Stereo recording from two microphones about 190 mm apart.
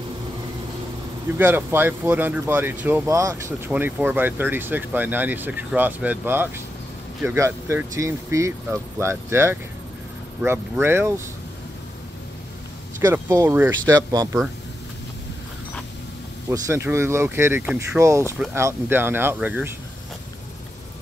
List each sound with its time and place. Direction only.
1.4 s speech: 10° right (ahead or behind)
13.0 s speech: 15° right (ahead or behind)
16.4 s speech: 15° right (ahead or behind)